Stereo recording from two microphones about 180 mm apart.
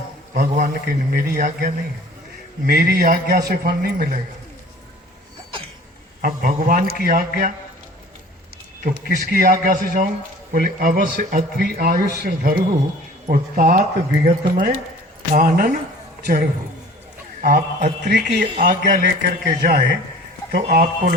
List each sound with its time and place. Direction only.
0.3 s a man's voice: 45° right (ahead or behind)
3.9 s speech: 45° right (ahead or behind)
6.2 s speech: 45° right (ahead or behind)
8.8 s speech: 50° right (ahead or behind)